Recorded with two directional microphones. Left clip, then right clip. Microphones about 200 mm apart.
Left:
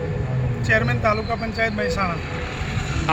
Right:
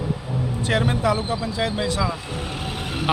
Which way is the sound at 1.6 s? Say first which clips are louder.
Left 3 dB; 20° right (ahead or behind).